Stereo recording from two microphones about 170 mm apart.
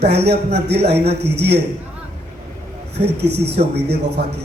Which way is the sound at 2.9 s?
75° right (ahead or behind).